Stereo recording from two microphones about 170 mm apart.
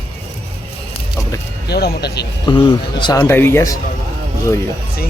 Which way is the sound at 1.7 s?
70° left (ahead or behind).